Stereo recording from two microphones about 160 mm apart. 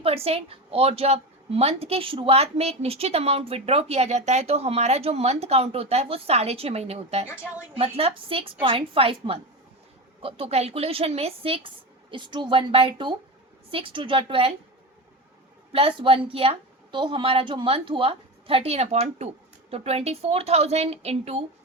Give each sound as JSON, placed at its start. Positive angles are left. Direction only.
{"t": 0.0, "sound": "a woman's voice", "side_deg": -40}
{"t": 15.7, "sound": "a woman's voice", "side_deg": -35}